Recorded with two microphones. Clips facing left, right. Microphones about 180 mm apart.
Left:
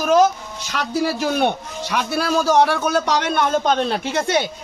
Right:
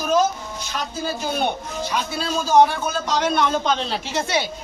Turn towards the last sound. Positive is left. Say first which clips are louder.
# left 4 dB
turn(degrees=55)  # may be behind; listen again after turning